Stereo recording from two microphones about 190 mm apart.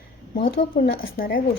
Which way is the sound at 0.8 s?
55° left (ahead or behind).